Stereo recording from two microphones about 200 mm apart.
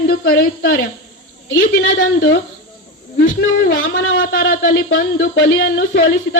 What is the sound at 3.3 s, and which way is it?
A man's voice, 60° left (ahead or behind).